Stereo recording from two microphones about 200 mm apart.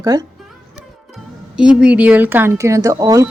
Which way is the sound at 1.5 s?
5° right (ahead or behind).